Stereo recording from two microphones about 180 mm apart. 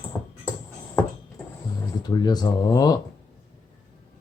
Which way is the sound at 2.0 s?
25° left (ahead or behind).